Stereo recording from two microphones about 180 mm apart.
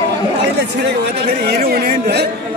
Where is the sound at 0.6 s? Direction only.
65° right (ahead or behind).